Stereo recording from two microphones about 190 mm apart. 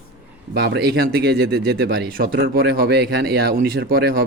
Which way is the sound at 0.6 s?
60° right (ahead or behind).